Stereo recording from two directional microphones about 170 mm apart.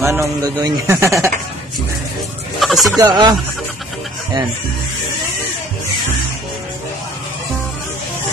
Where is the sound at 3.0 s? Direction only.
25° right (ahead or behind).